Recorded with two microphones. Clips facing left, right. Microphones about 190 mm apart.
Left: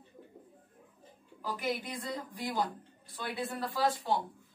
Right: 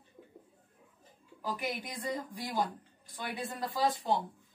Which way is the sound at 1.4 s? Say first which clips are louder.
Left 2 dB; 15° right (ahead or behind).